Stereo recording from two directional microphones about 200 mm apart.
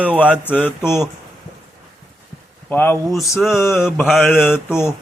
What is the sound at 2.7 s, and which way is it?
Speech, 10° left (ahead or behind).